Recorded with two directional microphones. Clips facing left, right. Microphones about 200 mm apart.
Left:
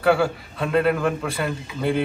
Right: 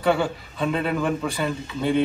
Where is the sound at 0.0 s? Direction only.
Centre (ahead or behind).